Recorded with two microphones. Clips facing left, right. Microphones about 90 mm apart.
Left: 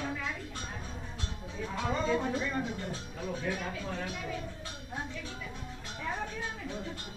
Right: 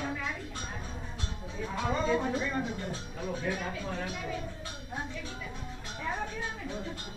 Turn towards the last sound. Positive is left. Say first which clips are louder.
# right 1 dB
turn(degrees=-20)  # may be behind; listen again after turning